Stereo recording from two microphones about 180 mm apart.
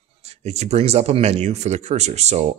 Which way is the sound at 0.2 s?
35° right (ahead or behind).